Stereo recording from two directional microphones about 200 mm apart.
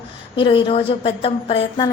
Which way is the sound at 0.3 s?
25° left (ahead or behind).